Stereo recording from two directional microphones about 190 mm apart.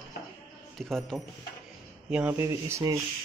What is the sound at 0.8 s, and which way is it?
Speech, centre (ahead or behind).